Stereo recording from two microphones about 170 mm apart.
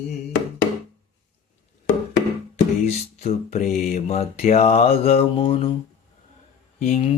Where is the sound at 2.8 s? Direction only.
40° left (ahead or behind).